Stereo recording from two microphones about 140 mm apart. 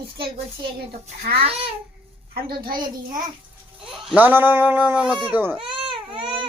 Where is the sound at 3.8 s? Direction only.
10° right (ahead or behind).